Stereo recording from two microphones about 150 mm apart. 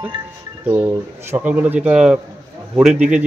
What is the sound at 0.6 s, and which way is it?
Speech, 15° right (ahead or behind).